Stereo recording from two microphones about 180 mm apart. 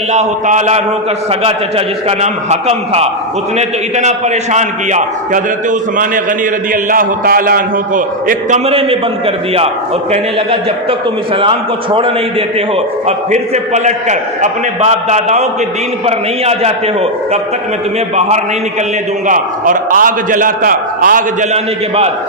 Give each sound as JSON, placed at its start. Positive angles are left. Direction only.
{"t": 0.1, "sound": "a man's voice", "side_deg": -40}
{"t": 6.9, "sound": "a man's voice", "side_deg": -50}
{"t": 19.3, "sound": "a man's voice", "side_deg": -50}